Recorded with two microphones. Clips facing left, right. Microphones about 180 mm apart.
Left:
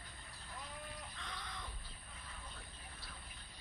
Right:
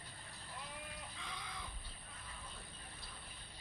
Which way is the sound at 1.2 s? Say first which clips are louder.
Right 1 dB; 5° right (ahead or behind).